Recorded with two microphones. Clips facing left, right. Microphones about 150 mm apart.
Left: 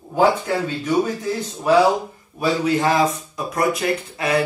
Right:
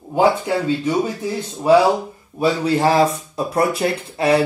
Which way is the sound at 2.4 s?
30° right (ahead or behind).